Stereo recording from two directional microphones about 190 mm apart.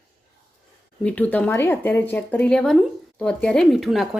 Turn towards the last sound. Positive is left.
turn(degrees=0)  # may be behind; listen again after turning